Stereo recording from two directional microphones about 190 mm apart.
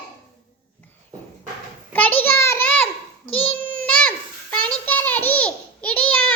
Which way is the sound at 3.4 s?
5° left (ahead or behind).